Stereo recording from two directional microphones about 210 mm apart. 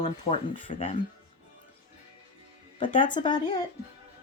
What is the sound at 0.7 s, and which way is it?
Speech, 40° left (ahead or behind).